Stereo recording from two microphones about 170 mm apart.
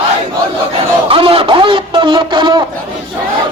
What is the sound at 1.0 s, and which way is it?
Speech, 35° right (ahead or behind).